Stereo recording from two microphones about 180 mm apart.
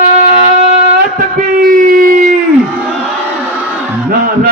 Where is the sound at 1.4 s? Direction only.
50° right (ahead or behind).